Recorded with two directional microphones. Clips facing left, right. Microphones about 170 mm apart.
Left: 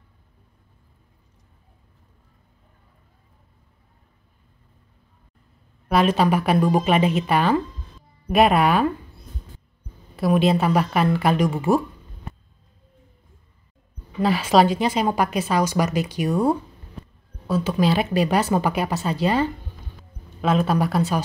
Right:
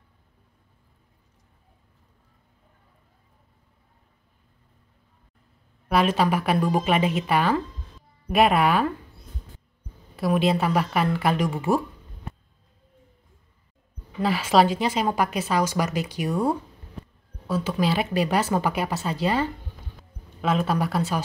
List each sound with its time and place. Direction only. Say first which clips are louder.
6.1 s speech: left 3 dB; 20° left (ahead or behind)
10.2 s speech: left 3 dB; 20° left (ahead or behind)
14.2 s a woman's voice: left 2 dB; 20° left (ahead or behind)
17.6 s a woman's voice: left 4 dB; 20° left (ahead or behind)